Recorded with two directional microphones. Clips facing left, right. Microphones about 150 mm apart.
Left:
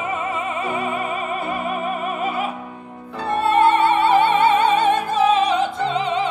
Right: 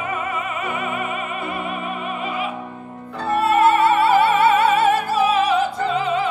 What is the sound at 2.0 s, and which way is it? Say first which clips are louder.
Opera: left 2 dB; 45° left (ahead or behind).